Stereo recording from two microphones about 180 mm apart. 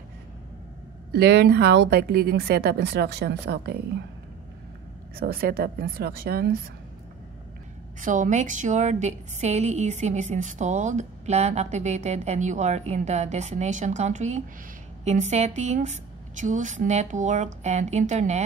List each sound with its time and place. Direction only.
1.1 s a woman's voice: 65° right (ahead or behind)
5.1 s a woman's voice: 60° right (ahead or behind)
8.0 s a woman's voice: 45° right (ahead or behind)